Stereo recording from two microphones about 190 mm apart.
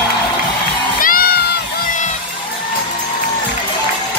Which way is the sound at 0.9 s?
50° left (ahead or behind).